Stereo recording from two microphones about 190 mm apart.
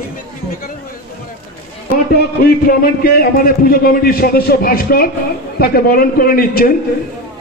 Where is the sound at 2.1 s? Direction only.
50° left (ahead or behind).